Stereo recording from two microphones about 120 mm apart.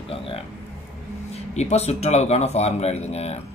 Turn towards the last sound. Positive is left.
turn(degrees=60)  # may be behind; listen again after turning